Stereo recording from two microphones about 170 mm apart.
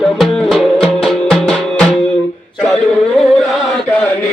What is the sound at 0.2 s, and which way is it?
Music, centre (ahead or behind).